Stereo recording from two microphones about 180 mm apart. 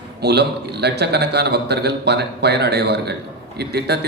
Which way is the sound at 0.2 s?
65° right (ahead or behind).